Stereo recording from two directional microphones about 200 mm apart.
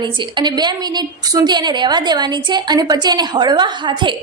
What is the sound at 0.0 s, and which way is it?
A woman's voice, 25° right (ahead or behind).